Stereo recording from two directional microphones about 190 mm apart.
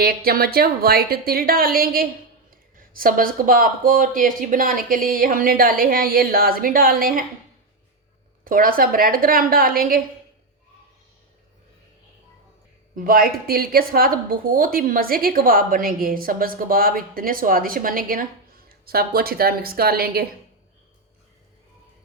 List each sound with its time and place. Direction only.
0.0 s a woman's voice: 50° right (ahead or behind)
8.4 s a woman's voice: 50° right (ahead or behind)
13.1 s a woman's voice: 50° right (ahead or behind)